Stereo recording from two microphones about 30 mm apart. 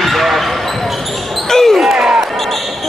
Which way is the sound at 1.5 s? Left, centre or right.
Centre.